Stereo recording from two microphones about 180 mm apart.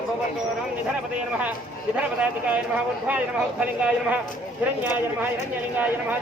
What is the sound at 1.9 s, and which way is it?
Speech, 10° right (ahead or behind).